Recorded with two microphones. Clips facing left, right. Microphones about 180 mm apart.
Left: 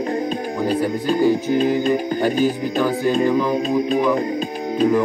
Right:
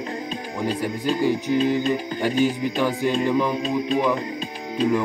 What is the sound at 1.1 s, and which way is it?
Speech, 50° left (ahead or behind).